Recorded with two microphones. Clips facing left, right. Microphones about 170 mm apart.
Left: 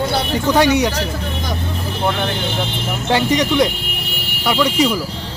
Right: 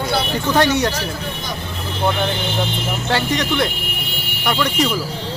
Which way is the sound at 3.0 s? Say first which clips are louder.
Left 5 dB; 15° left (ahead or behind).